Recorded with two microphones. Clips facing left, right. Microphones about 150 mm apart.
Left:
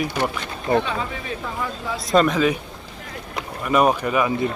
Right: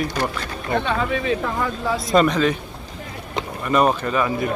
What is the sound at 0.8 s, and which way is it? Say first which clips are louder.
Speech: right 6 dB; 80° right.